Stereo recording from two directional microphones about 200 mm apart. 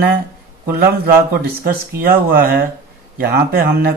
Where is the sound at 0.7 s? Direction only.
50° right (ahead or behind).